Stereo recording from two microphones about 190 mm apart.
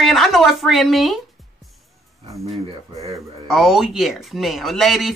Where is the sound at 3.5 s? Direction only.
Centre (ahead or behind).